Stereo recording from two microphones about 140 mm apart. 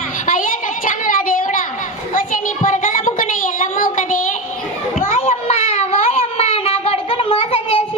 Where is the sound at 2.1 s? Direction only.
70° left (ahead or behind).